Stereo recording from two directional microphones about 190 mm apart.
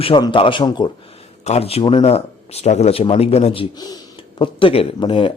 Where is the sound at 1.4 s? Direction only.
35° left (ahead or behind).